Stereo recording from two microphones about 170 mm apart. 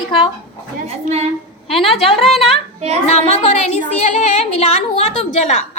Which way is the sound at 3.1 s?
40° left (ahead or behind).